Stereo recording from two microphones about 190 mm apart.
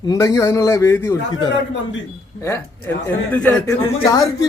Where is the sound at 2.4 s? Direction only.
15° left (ahead or behind).